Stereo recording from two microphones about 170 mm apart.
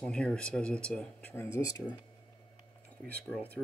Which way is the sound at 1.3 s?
15° left (ahead or behind).